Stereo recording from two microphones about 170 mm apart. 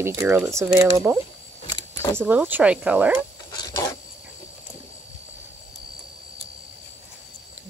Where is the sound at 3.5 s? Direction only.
20° left (ahead or behind).